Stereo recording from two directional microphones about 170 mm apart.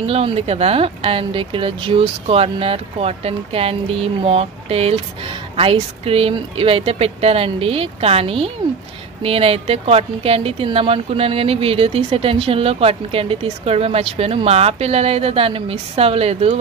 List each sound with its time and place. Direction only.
0.0 s speech: 35° right (ahead or behind)